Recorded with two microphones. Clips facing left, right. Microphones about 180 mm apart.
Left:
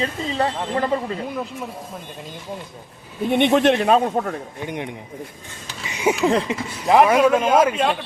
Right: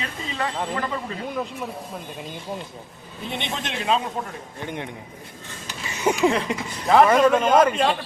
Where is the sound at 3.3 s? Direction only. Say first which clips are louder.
Left 15 dB; 60° left (ahead or behind).